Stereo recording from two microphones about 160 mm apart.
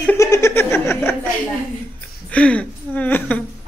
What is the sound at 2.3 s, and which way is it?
Speech, 10° left (ahead or behind).